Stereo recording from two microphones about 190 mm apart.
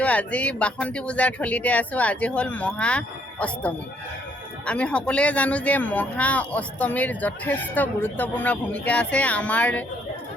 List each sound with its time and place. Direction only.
0.0 s speech: 5° left (ahead or behind)
4.6 s speech: 5° left (ahead or behind)